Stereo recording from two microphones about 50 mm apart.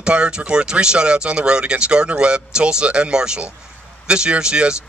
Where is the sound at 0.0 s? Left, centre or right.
Centre.